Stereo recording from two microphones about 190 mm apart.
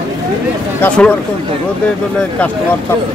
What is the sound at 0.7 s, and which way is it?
Speech, 5° left (ahead or behind).